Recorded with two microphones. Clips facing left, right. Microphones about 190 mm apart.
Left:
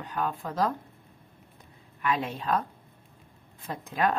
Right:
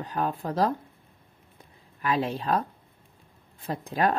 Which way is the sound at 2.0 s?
35° right (ahead or behind).